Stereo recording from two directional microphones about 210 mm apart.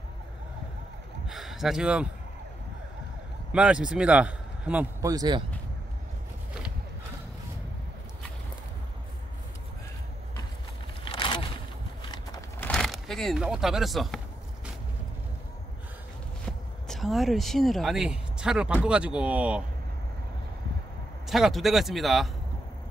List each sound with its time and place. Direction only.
1.3 s speech: centre (ahead or behind)
3.5 s a man's voice: 5° right (ahead or behind)
5.0 s speech: 15° right (ahead or behind)
11.1 s a sound: 20° left (ahead or behind); by 14.2 s centre (ahead or behind)
16.4 s speech: centre (ahead or behind)
21.3 s speech: centre (ahead or behind)